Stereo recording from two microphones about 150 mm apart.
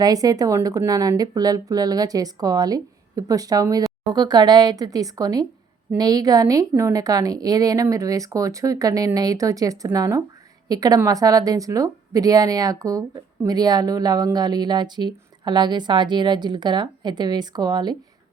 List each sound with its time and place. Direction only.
0.0 s a woman's voice: 25° right (ahead or behind)